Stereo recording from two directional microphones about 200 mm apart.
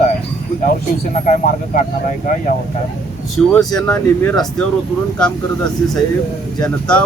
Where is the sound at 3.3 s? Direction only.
Centre (ahead or behind).